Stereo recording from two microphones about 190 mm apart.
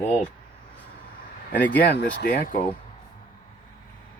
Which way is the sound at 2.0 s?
50° left (ahead or behind).